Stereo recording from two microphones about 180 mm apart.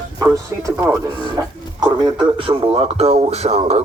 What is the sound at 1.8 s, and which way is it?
Speech, 25° right (ahead or behind).